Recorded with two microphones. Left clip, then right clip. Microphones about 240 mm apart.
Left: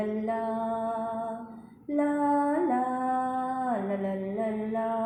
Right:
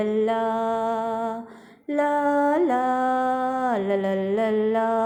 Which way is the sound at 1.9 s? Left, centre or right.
Right.